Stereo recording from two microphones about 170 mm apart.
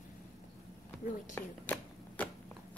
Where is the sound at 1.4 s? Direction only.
10° left (ahead or behind).